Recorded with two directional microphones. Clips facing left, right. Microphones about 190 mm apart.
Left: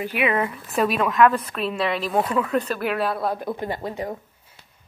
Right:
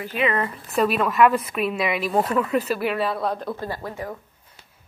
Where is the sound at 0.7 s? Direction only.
Centre (ahead or behind).